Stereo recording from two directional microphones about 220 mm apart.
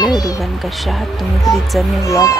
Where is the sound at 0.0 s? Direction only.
15° left (ahead or behind).